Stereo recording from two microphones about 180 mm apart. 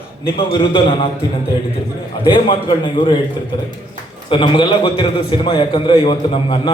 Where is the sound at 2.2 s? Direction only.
30° left (ahead or behind).